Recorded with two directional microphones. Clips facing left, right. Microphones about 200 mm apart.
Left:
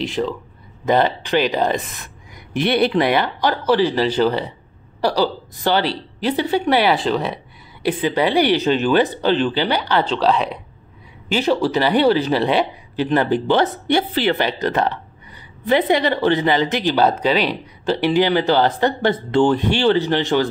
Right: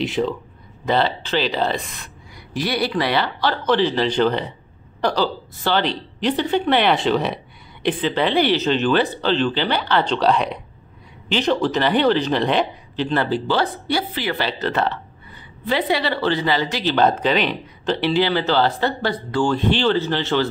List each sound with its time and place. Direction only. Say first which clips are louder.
0.0 s speech: right 1 dB; centre (ahead or behind)
0.8 s a woman's voice: left 3 dB; 15° left (ahead or behind); by 7.3 s centre (ahead or behind)
7.8 s a woman's voice: left 2 dB; 10° left (ahead or behind); by 14.4 s 25° left (ahead or behind)
14.4 s a woman's voice: left 2 dB; 15° left (ahead or behind)